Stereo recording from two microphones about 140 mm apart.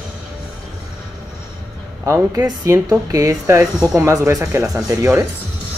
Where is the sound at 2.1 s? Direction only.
25° right (ahead or behind).